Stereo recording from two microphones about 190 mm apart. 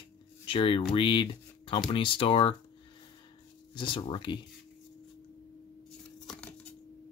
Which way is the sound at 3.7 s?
25° left (ahead or behind).